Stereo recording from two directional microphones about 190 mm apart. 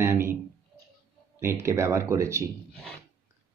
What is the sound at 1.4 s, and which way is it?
Speech, 15° right (ahead or behind).